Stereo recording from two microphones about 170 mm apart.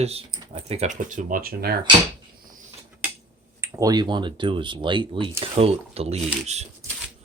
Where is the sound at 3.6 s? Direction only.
20° right (ahead or behind).